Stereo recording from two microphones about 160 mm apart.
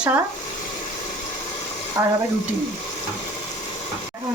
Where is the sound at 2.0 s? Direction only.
15° right (ahead or behind).